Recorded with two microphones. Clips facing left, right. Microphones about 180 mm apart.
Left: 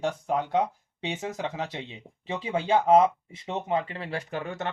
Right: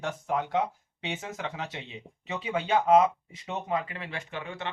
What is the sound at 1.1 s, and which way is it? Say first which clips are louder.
Speech: left 3 dB; 35° left (ahead or behind).